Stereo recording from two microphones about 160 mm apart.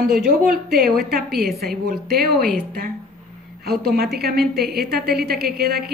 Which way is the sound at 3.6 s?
80° right.